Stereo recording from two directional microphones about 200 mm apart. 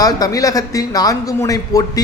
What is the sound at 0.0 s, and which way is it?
A man's voice, 15° left (ahead or behind).